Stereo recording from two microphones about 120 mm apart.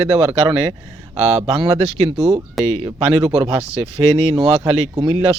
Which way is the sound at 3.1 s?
60° right (ahead or behind).